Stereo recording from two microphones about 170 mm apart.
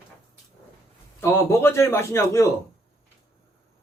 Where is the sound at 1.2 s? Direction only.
15° left (ahead or behind).